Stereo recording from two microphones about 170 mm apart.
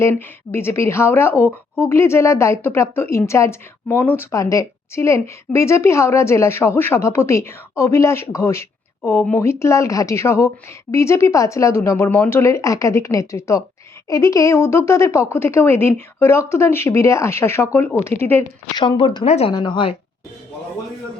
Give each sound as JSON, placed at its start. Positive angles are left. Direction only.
{"t": 0.0, "sound": "a woman's voice", "side_deg": 15}
{"t": 18.8, "sound": "speech", "side_deg": 30}
{"t": 19.5, "sound": "a woman's voice", "side_deg": 30}